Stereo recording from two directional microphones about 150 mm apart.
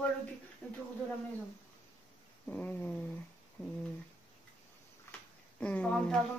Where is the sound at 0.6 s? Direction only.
10° left (ahead or behind).